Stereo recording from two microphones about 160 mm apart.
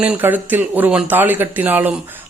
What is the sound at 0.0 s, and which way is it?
Speech, 10° right (ahead or behind).